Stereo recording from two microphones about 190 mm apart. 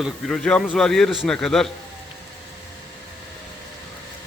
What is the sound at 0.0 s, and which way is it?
A man's voice, centre (ahead or behind).